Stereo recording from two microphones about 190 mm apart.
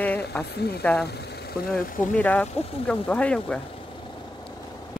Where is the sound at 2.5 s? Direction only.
30° left (ahead or behind).